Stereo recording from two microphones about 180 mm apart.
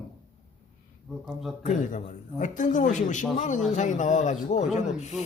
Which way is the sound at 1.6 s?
45° left (ahead or behind).